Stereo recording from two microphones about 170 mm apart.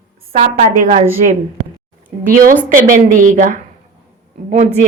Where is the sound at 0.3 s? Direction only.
45° right (ahead or behind).